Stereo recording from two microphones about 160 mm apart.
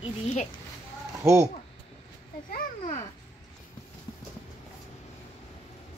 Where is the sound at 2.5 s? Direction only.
55° left (ahead or behind).